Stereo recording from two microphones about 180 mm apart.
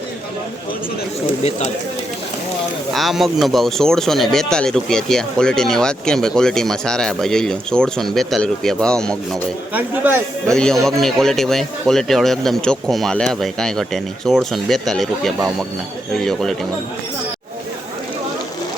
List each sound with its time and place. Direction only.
1.5 s speech: 40° left (ahead or behind)
2.9 s speech: centre (ahead or behind)
9.7 s speech: 10° right (ahead or behind)
10.4 s speech: 5° left (ahead or behind)